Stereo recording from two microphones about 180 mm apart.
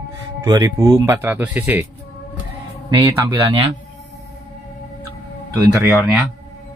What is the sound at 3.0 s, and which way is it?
Speech, 15° right (ahead or behind).